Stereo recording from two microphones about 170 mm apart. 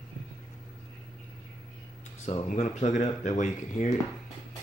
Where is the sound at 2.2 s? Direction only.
45° left (ahead or behind).